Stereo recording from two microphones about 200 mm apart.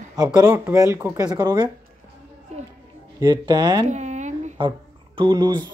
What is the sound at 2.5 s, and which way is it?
Speech, 35° right (ahead or behind).